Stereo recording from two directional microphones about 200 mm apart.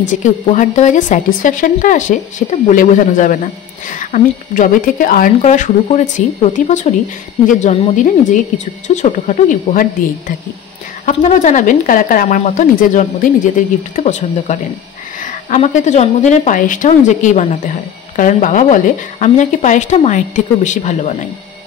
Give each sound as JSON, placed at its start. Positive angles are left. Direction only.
{"t": 0.0, "sound": "a woman's voice", "side_deg": 40}